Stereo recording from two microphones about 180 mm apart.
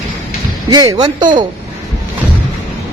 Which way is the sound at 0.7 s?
20° right (ahead or behind).